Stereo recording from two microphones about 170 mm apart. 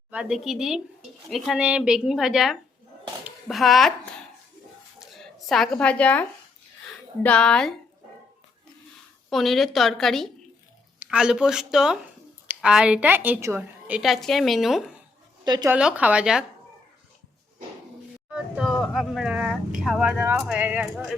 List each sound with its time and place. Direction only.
0.1 s a woman's voice: 5° right (ahead or behind)
4.9 s a sound: centre (ahead or behind)
7.2 s a woman's voice: 5° left (ahead or behind)
9.3 s a woman's voice: centre (ahead or behind)
15.4 s speech: 25° right (ahead or behind)
15.7 s a woman's voice: 5° right (ahead or behind)
18.3 s vehicle: 5° right (ahead or behind)
20.3 s a woman's voice: 5° right (ahead or behind)